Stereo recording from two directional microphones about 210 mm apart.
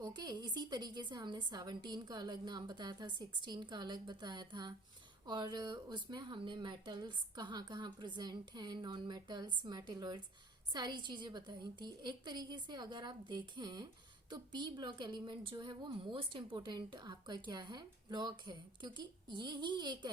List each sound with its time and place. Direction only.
0.0 s a woman's voice: 20° right (ahead or behind)